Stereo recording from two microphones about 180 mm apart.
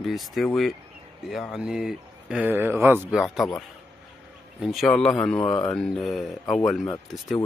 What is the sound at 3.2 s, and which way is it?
Speech, centre (ahead or behind).